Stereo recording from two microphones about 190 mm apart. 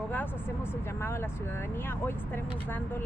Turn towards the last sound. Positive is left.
turn(degrees=10)  # may be behind; listen again after turning